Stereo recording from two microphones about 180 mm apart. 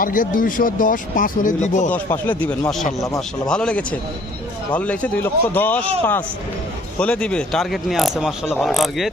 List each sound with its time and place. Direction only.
0.0 s speech: 50° left (ahead or behind)
1.9 s a man's voice: 10° left (ahead or behind)